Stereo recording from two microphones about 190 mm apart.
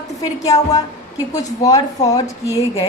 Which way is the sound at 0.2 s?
20° left (ahead or behind).